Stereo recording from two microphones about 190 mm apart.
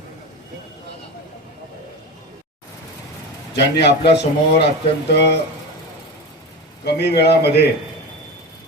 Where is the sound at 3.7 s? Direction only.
60° left (ahead or behind).